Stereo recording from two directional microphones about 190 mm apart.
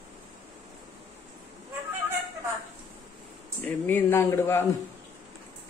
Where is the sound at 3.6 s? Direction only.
10° left (ahead or behind).